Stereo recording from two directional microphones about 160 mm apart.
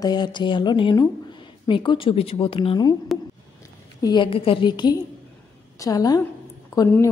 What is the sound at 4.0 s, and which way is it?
A woman's voice, 25° left (ahead or behind).